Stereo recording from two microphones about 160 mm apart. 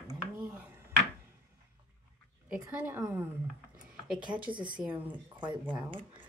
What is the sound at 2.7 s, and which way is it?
Speech, 10° right (ahead or behind).